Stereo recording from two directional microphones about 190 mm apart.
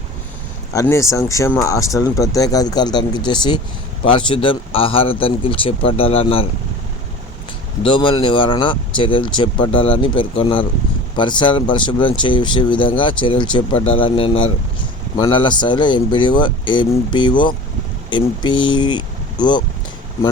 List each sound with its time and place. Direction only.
0.7 s speech: 15° left (ahead or behind)
7.9 s speech: 25° left (ahead or behind)